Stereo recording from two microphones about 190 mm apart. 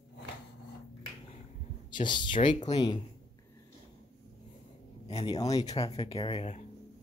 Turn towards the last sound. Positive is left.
turn(degrees=30)  # may be behind; listen again after turning